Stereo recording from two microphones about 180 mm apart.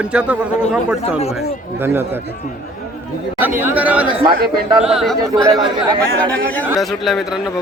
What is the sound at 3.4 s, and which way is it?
A man's voice, 10° right (ahead or behind).